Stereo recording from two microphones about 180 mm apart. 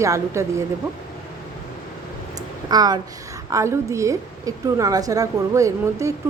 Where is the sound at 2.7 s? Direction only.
20° right (ahead or behind).